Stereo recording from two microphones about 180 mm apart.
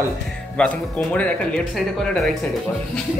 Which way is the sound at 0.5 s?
5° left (ahead or behind).